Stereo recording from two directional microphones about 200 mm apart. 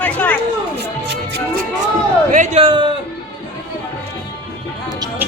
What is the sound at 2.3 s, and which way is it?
Speech, 35° right (ahead or behind).